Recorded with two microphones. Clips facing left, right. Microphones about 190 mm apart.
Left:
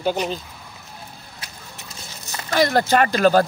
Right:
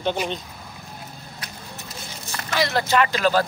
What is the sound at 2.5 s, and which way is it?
Speech, 45° left (ahead or behind).